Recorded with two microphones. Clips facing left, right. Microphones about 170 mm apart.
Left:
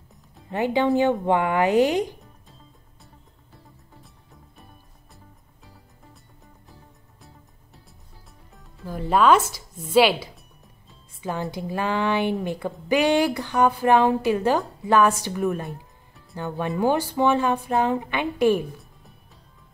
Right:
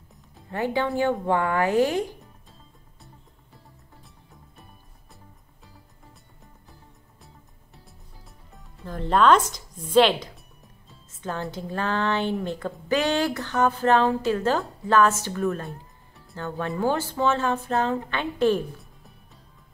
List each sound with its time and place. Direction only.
0.5 s speech: 20° left (ahead or behind)
8.5 s music: 5° left (ahead or behind)
11.5 s speech: 10° left (ahead or behind)